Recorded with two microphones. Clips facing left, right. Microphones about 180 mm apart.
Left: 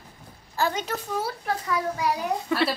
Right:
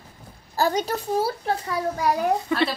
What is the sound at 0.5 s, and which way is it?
A child's voice, 35° right (ahead or behind).